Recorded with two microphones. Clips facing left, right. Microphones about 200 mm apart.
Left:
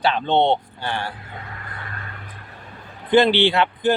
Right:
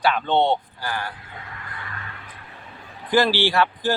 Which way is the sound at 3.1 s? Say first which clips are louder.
Left 4 dB; 20° left (ahead or behind).